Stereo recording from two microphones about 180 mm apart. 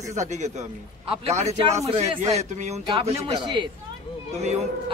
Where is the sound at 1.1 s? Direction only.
35° right (ahead or behind).